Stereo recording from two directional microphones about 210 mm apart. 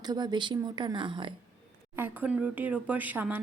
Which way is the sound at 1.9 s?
10° right (ahead or behind).